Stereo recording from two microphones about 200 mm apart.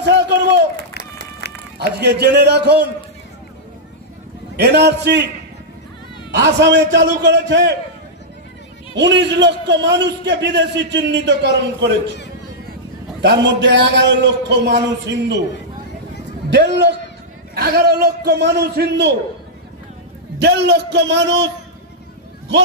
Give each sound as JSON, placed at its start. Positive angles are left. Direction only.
{"t": 0.0, "sound": "run", "side_deg": -60}
{"t": 2.0, "sound": "a man's voice", "side_deg": -55}
{"t": 4.6, "sound": "a man's voice", "side_deg": -55}
{"t": 6.3, "sound": "a man's voice", "side_deg": -60}
{"t": 8.9, "sound": "a man's voice", "side_deg": -60}
{"t": 13.2, "sound": "a man's voice", "side_deg": -60}
{"t": 16.4, "sound": "a man's voice", "side_deg": -60}
{"t": 20.3, "sound": "a man's voice", "side_deg": -60}